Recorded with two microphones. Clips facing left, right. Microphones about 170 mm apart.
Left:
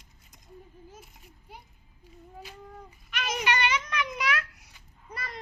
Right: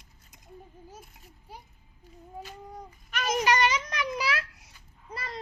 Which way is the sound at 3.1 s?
40° right (ahead or behind).